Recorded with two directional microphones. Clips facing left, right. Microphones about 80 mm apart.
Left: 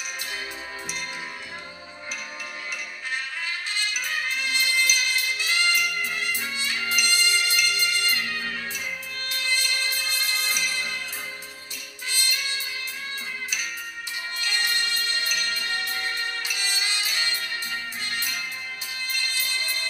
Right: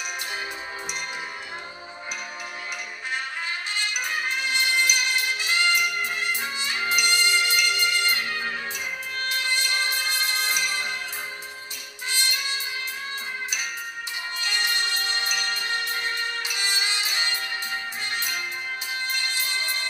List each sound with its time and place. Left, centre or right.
4.0 s music: right
5.6 s trumpet: right
7.6 s music: right
14.4 s music: right